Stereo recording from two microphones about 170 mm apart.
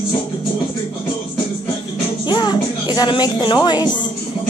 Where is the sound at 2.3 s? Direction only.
25° left (ahead or behind).